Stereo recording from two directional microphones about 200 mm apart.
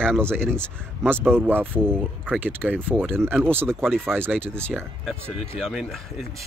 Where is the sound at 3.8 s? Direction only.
5° left (ahead or behind).